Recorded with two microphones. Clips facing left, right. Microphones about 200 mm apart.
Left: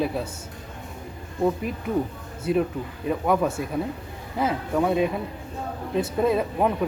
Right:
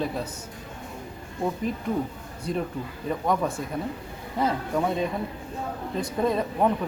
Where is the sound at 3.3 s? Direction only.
5° left (ahead or behind).